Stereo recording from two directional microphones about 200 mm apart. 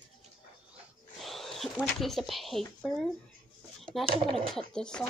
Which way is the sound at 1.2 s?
Centre (ahead or behind).